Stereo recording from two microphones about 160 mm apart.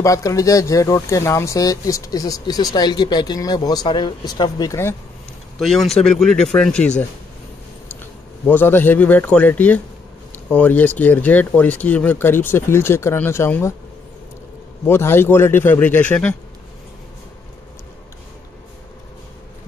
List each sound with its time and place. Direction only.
0.0 s speech: 20° left (ahead or behind)
5.6 s speech: centre (ahead or behind)
8.0 s speech: 10° left (ahead or behind)
14.9 s speech: 15° left (ahead or behind)